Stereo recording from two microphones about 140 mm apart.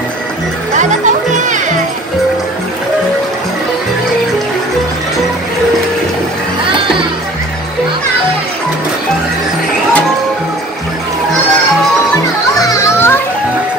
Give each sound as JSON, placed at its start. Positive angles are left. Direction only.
{"t": 0.7, "sound": "music", "side_deg": -60}
{"t": 12.5, "sound": "children playing", "side_deg": 25}